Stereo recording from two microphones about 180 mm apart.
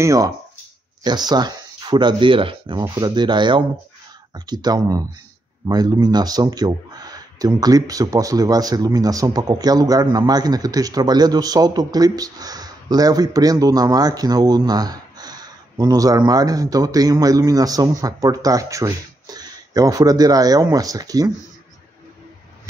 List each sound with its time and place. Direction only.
0.0 s speech: 15° right (ahead or behind)